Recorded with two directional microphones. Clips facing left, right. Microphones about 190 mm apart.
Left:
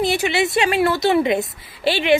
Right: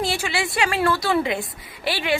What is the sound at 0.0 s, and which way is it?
A woman's voice, 20° left (ahead or behind).